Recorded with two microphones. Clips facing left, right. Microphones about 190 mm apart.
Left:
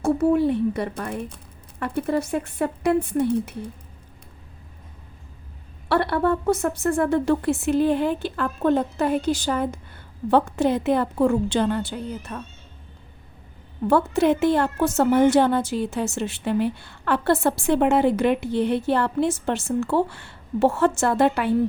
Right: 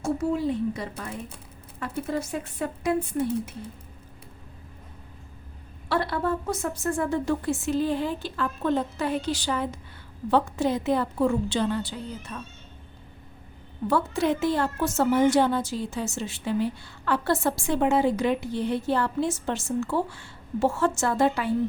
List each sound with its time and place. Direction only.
0.0 s a woman's voice: 60° left (ahead or behind)
5.9 s a woman's voice: 60° left (ahead or behind)
13.8 s a woman's voice: 60° left (ahead or behind)